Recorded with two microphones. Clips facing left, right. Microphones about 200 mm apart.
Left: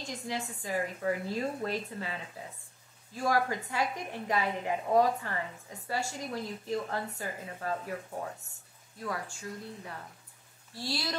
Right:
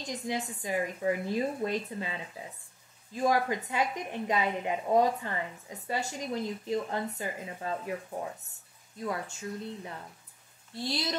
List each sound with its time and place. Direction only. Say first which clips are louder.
0.0 s a woman's voice: right 3 dB; 20° right (ahead or behind)
9.0 s a woman's voice: right 3 dB; 20° right (ahead or behind)
10.7 s a woman's voice: right 2 dB; 20° right (ahead or behind)